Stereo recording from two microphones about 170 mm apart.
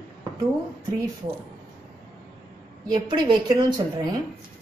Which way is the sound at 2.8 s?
25° right (ahead or behind).